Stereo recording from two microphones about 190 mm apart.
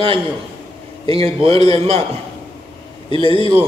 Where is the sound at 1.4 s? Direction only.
30° right (ahead or behind).